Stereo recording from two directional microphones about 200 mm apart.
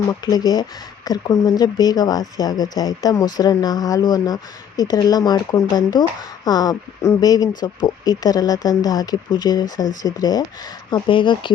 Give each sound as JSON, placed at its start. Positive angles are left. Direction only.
{"t": 0.1, "sound": "speech", "side_deg": 20}